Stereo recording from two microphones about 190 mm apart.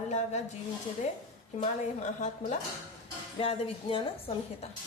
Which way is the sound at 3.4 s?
30° left (ahead or behind).